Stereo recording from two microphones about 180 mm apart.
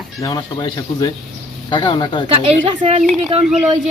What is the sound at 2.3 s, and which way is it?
Speech, 35° right (ahead or behind).